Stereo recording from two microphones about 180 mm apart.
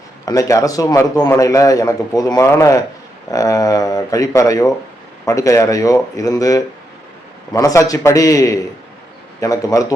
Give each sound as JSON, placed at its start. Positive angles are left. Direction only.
{"t": 0.3, "sound": "a man's voice", "side_deg": 20}